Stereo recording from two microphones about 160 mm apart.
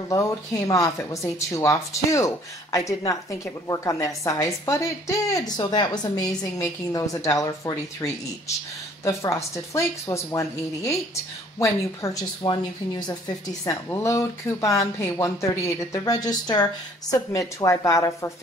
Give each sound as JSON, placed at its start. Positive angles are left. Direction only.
{"t": 0.1, "sound": "a woman's voice", "side_deg": 20}